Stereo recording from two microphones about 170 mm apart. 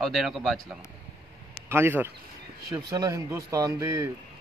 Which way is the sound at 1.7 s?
15° right (ahead or behind).